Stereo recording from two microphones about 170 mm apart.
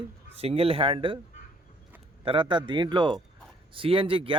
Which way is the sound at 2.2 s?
30° right (ahead or behind).